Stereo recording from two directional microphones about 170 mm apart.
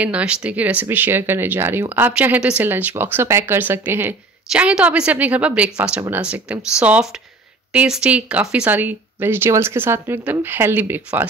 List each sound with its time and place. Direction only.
0.0 s speech: 5° right (ahead or behind)